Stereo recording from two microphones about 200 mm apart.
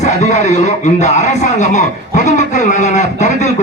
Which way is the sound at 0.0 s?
35° left (ahead or behind).